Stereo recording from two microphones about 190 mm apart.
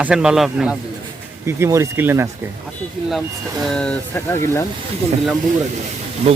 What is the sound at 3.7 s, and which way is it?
Speech, 5° left (ahead or behind).